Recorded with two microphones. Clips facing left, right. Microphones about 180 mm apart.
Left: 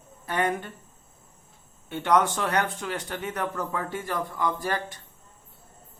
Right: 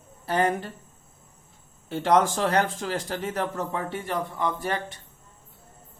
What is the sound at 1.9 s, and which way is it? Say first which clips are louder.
Speech: right 2 dB; 35° right (ahead or behind).